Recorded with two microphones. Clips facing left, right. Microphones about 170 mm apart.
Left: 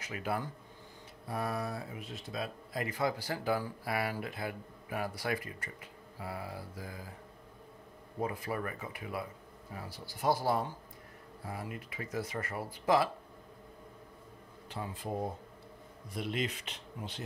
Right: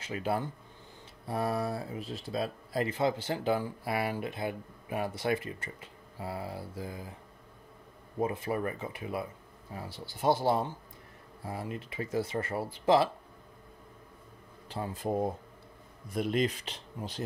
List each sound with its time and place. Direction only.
0.0 s speech: 30° right (ahead or behind)
8.2 s speech: 25° right (ahead or behind)
14.7 s speech: 35° right (ahead or behind)
16.1 s speech: 45° right (ahead or behind)